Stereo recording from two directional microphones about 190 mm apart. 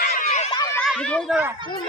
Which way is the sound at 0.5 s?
20° left (ahead or behind).